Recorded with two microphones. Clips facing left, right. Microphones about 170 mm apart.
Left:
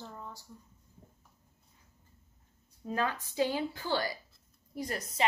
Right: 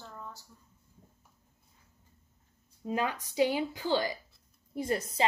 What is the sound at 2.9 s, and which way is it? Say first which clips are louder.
A woman's voice: right 1 dB; 15° right (ahead or behind).